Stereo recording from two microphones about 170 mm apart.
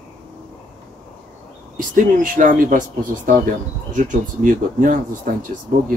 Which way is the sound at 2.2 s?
50° right (ahead or behind).